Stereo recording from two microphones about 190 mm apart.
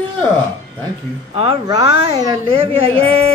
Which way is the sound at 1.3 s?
25° right (ahead or behind).